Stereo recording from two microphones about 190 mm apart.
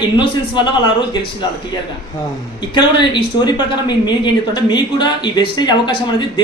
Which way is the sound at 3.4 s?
25° left (ahead or behind).